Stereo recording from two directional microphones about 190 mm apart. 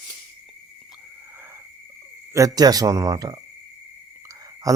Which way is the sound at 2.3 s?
20° right (ahead or behind).